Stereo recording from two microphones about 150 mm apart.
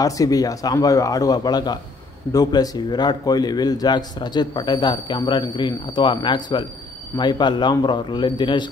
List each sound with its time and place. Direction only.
0.0 s a man's voice: 25° left (ahead or behind)